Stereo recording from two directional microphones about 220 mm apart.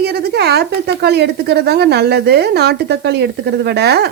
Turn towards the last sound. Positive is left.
turn(degrees=-50)  # may be behind; listen again after turning